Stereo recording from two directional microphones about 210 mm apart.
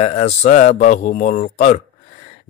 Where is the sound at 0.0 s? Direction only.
30° left (ahead or behind).